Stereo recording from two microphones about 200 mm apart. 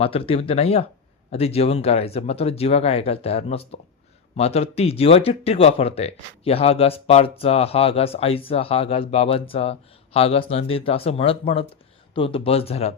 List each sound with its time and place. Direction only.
0.0 s speech: 30° left (ahead or behind)